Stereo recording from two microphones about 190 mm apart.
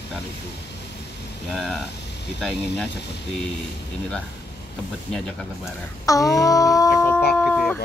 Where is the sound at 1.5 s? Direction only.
5° right (ahead or behind).